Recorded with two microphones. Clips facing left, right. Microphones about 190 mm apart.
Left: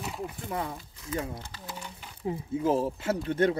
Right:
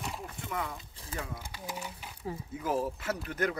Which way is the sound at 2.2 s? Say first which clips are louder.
Left 8 dB; 25° left (ahead or behind).